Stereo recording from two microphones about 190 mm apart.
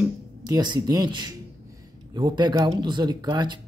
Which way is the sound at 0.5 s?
20° right (ahead or behind).